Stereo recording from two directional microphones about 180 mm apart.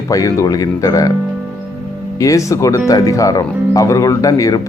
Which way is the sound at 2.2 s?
15° left (ahead or behind).